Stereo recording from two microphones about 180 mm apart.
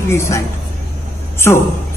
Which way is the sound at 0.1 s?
15° left (ahead or behind).